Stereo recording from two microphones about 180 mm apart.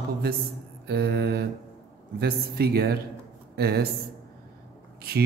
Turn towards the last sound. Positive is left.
turn(degrees=-60)  # may be behind; listen again after turning